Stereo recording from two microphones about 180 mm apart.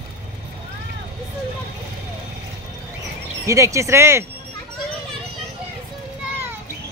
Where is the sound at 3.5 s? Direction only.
15° right (ahead or behind).